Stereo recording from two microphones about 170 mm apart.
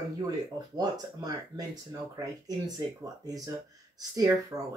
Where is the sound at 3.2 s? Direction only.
20° right (ahead or behind).